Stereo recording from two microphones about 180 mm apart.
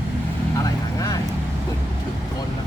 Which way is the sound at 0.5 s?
20° left (ahead or behind).